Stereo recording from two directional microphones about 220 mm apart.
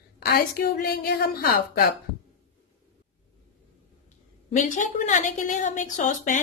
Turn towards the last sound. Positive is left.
turn(degrees=35)  # may be behind; listen again after turning